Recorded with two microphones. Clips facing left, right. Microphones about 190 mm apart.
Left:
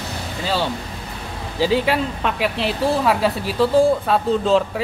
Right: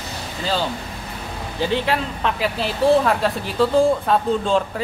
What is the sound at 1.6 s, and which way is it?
Speech, 5° left (ahead or behind).